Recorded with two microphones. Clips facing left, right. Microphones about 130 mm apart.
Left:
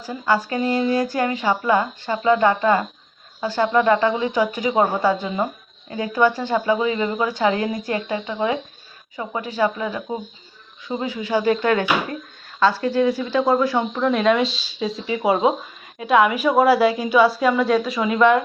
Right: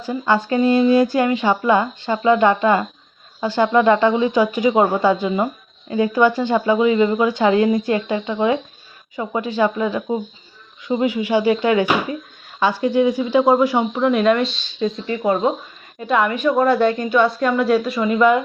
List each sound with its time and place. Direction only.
0.0 s speech: 20° right (ahead or behind)
14.0 s a woman's voice: 5° right (ahead or behind)